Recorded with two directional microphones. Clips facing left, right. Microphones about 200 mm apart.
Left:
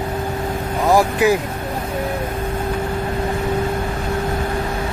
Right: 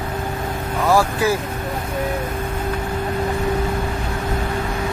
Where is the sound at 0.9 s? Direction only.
20° left (ahead or behind).